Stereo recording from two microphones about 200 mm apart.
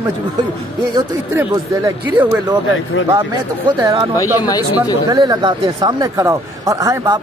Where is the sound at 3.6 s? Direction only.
25° right (ahead or behind).